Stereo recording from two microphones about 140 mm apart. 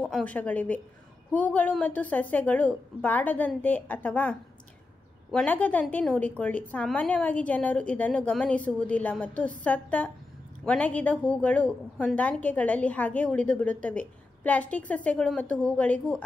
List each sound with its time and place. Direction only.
0.0 s a woman's voice: 5° left (ahead or behind)